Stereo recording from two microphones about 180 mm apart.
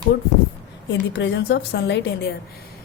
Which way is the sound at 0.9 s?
70° left (ahead or behind).